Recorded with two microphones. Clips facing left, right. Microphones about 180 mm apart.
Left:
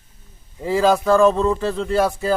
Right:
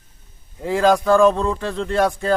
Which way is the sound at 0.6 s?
Centre (ahead or behind).